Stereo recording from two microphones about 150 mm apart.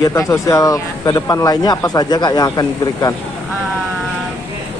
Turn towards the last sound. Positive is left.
turn(degrees=25)  # may be behind; listen again after turning